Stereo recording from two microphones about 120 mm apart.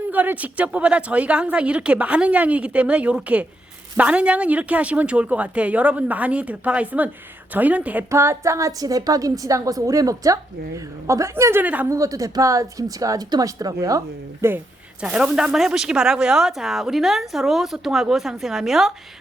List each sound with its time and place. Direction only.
0.1 s a woman's voice: 15° right (ahead or behind)
8.1 s a woman's voice: 25° right (ahead or behind)
11.6 s a woman's voice: 10° right (ahead or behind)
11.9 s a woman's voice: 25° right (ahead or behind)
15.0 s speech: 5° right (ahead or behind)